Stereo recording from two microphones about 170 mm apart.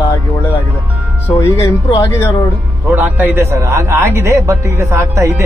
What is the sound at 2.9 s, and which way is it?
A man's voice, 10° right (ahead or behind).